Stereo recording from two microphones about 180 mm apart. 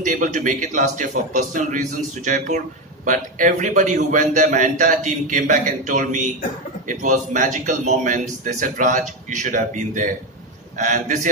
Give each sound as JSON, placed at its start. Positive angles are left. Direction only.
{"t": 0.0, "sound": "a man's voice", "side_deg": -45}